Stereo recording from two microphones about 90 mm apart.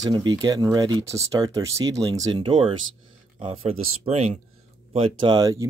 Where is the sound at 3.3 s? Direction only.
80° right.